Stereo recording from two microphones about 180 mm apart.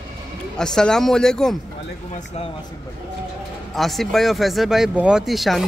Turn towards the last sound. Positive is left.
turn(degrees=0)  # may be behind; listen again after turning